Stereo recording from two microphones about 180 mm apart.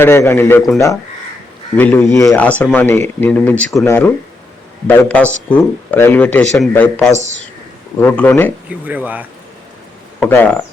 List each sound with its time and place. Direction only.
0.0 s speech: 15° left (ahead or behind)
1.7 s speech: 10° left (ahead or behind)
2.4 s speech: 5° left (ahead or behind)
7.1 s speech: 40° right (ahead or behind)
7.9 s speech: 10° left (ahead or behind)
8.7 s speech: 10° right (ahead or behind)
10.2 s speech: 10° left (ahead or behind)